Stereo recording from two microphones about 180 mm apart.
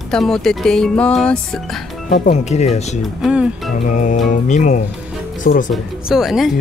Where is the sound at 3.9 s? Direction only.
40° left (ahead or behind).